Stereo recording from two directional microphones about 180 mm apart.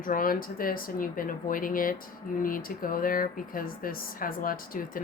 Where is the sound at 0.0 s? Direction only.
50° left (ahead or behind).